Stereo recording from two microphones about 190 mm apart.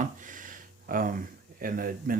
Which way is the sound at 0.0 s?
40° right (ahead or behind).